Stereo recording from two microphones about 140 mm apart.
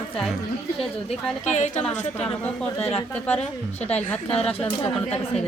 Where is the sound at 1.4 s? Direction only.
60° left (ahead or behind).